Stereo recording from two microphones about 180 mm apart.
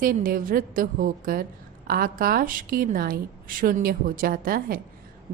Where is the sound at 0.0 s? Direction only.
50° right (ahead or behind).